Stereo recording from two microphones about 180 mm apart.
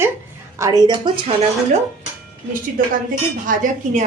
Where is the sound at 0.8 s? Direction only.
25° right (ahead or behind).